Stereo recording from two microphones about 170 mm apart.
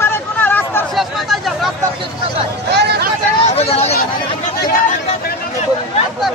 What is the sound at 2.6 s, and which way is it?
Speech, 75° right (ahead or behind).